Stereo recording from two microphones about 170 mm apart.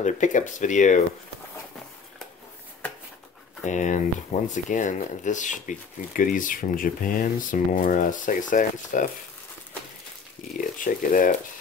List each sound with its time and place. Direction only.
0.0 s speech: 45° left (ahead or behind)
3.6 s speech: 45° left (ahead or behind)
10.6 s speech: 55° left (ahead or behind)